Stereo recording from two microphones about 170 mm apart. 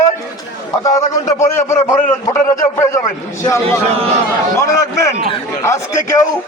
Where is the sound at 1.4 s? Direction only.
15° left (ahead or behind).